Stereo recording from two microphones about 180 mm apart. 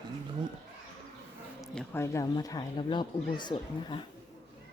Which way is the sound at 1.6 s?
5° left (ahead or behind).